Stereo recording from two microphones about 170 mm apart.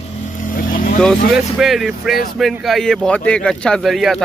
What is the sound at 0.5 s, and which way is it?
Vehicle, 55° left (ahead or behind).